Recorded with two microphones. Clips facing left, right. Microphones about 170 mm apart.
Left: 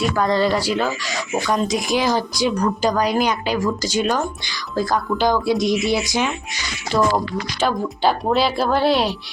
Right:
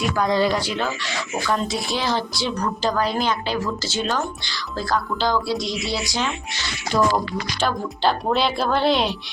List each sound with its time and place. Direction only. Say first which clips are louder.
0.0 s speech: left 2 dB; 5° right (ahead or behind)
0.8 s a woman's voice: left 3 dB; 10° left (ahead or behind)
6.9 s speech: left 2 dB; 5° left (ahead or behind)